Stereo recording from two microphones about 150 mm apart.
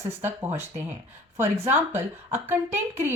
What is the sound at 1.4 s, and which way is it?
Speech, 15° right (ahead or behind).